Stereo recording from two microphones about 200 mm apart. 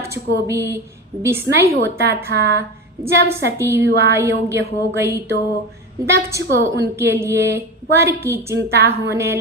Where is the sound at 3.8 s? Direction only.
60° right (ahead or behind).